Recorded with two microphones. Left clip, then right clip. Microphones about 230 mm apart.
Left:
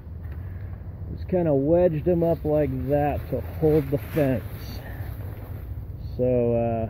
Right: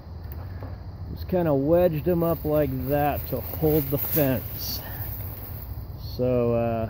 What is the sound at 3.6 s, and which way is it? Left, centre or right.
Speech, centre.